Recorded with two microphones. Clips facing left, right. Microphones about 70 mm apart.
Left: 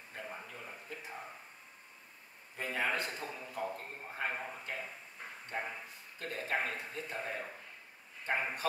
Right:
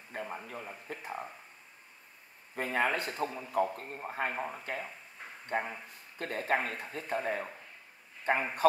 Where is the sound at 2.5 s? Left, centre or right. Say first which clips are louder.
Right 5 dB; right.